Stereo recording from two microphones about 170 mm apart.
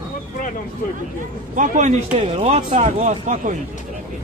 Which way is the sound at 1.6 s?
45° right (ahead or behind).